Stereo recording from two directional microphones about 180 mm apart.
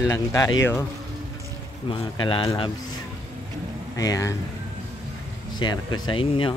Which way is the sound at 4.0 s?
20° left (ahead or behind).